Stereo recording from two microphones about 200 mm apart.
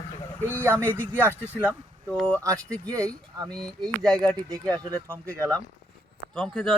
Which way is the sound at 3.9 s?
5° left (ahead or behind).